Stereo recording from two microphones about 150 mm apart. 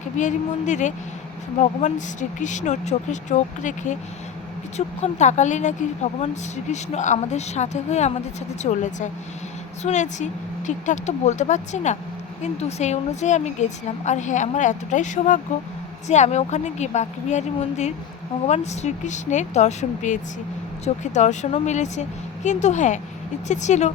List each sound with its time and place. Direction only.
0.2 s speech: 55° left (ahead or behind)
4.9 s a woman's voice: 50° left (ahead or behind)